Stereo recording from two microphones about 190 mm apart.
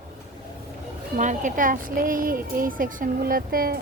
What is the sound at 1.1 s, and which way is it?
Speech, 40° right (ahead or behind).